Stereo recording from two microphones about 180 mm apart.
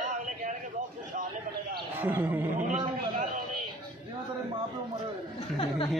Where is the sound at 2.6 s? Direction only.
45° right (ahead or behind).